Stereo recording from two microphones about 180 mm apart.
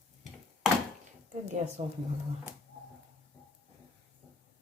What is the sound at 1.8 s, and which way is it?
Speech, 40° right (ahead or behind).